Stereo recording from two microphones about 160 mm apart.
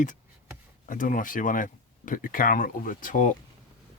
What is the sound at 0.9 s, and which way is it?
Speech, 55° left (ahead or behind).